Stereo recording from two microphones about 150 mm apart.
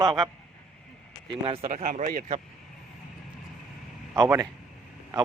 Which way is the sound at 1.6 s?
65° right (ahead or behind).